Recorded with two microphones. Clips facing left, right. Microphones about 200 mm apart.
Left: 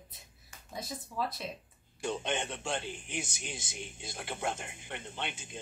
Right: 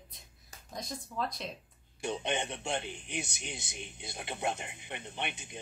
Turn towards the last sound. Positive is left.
turn(degrees=-15)  # may be behind; listen again after turning